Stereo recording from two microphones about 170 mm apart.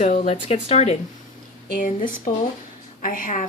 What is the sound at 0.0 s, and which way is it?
Speech, 40° left (ahead or behind).